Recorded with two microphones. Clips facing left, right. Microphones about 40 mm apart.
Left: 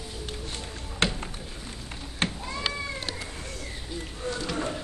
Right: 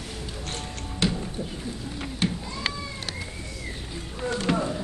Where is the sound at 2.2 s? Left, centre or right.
Left.